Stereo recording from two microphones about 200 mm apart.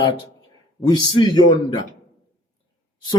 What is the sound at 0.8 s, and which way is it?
Speech, 20° left (ahead or behind).